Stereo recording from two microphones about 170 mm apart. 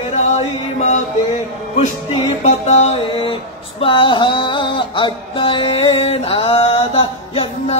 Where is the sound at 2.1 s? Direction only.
40° left (ahead or behind).